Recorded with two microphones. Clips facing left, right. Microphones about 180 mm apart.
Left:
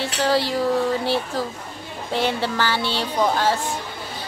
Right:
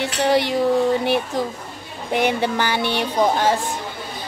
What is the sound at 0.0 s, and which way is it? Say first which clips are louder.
Speech: right 2 dB; 20° right (ahead or behind).